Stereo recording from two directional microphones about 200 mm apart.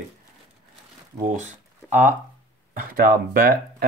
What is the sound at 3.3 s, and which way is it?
Speech, 50° right (ahead or behind).